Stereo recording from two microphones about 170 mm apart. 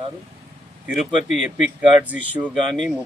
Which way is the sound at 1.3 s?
5° right (ahead or behind).